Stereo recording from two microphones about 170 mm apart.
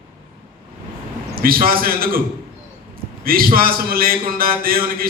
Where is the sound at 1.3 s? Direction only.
60° right (ahead or behind).